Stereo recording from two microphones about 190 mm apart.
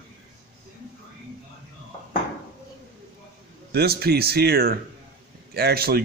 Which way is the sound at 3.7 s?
55° right (ahead or behind).